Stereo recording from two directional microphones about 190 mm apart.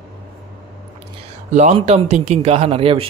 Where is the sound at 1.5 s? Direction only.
35° right (ahead or behind).